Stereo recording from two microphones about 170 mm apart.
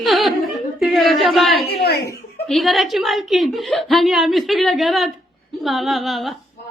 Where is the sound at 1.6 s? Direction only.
70° left (ahead or behind).